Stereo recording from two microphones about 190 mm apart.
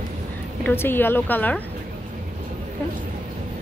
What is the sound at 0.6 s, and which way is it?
Speech, 10° left (ahead or behind).